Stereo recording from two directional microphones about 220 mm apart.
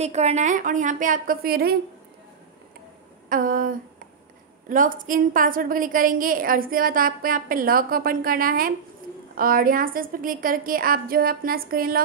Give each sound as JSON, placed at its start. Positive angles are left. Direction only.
{"t": 0.0, "sound": "a woman's voice", "side_deg": -30}
{"t": 3.3, "sound": "a sound", "side_deg": -40}
{"t": 4.6, "sound": "a woman's voice", "side_deg": -40}